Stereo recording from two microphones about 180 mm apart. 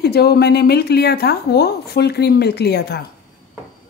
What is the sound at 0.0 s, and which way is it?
Speech, 60° left (ahead or behind).